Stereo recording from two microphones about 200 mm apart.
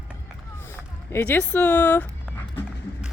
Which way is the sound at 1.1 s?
10° left (ahead or behind).